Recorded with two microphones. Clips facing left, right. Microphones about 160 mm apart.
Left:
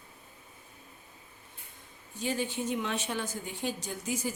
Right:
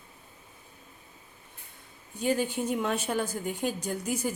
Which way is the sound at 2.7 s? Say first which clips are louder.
Right 4 dB; 45° right (ahead or behind).